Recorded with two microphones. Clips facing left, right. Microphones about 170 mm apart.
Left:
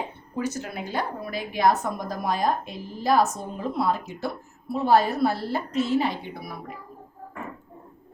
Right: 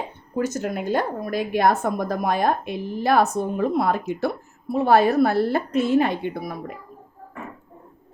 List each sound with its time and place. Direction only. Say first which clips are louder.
0.3 s speech: right 5 dB; 50° right (ahead or behind)